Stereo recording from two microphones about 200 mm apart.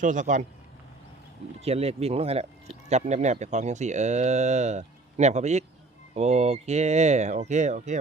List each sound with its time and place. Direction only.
0.0 s speech: 40° right (ahead or behind)
1.6 s speech: 30° right (ahead or behind)